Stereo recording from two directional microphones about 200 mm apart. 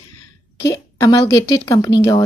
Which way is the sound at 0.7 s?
15° left (ahead or behind).